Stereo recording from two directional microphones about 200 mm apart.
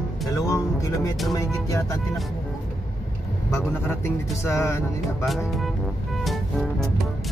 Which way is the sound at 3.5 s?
10° left (ahead or behind).